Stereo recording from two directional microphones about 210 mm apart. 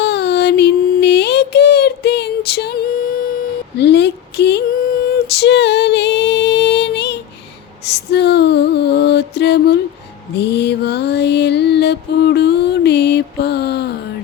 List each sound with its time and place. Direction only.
0.0 s music: 50° left (ahead or behind)
3.8 s female singing: 55° left (ahead or behind)
7.9 s music: 50° left (ahead or behind)
10.3 s mantra: 55° left (ahead or behind)